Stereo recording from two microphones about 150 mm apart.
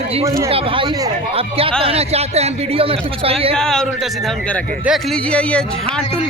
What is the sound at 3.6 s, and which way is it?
A man's voice, 5° left (ahead or behind).